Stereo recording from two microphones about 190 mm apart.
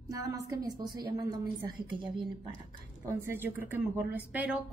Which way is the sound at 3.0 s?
10° right (ahead or behind).